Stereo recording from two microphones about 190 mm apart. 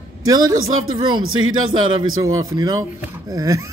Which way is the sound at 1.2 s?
90° right.